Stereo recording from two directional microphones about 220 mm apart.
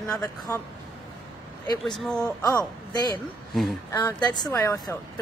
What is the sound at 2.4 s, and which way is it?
Speech, 15° left (ahead or behind).